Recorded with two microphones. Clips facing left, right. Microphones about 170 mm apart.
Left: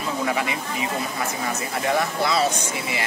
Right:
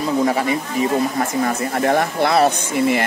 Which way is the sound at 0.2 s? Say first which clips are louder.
Right 7 dB; 40° right (ahead or behind).